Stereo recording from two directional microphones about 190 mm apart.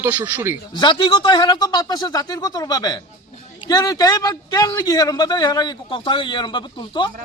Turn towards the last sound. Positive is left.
turn(degrees=25)  # may be behind; listen again after turning